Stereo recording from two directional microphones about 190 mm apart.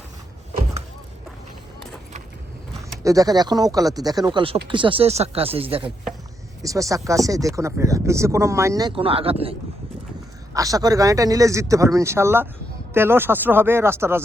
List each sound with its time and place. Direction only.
3.0 s speech: 20° right (ahead or behind)
6.6 s speech: 15° right (ahead or behind)
10.5 s speech: 15° right (ahead or behind)